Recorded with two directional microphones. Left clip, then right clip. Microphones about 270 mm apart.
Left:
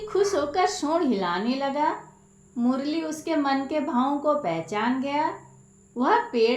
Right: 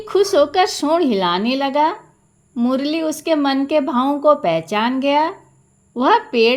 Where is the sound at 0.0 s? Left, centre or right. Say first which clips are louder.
Right 9 dB; right.